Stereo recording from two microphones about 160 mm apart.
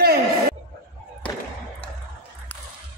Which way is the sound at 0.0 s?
70° right (ahead or behind).